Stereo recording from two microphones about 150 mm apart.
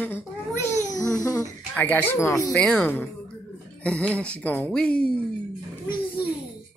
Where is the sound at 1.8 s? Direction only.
10° left (ahead or behind).